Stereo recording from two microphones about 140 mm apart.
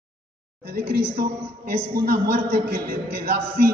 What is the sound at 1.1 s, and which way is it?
A man's voice, 90° right.